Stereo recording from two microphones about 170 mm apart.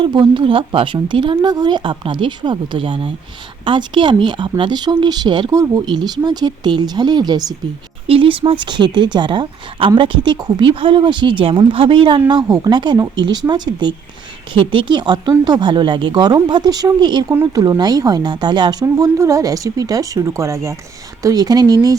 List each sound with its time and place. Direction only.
0.0 s speech: 30° right (ahead or behind)